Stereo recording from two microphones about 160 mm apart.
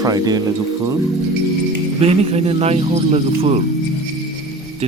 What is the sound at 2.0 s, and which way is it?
Speech, 40° right (ahead or behind).